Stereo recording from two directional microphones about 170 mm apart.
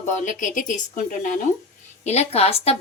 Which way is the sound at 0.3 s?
50° left (ahead or behind).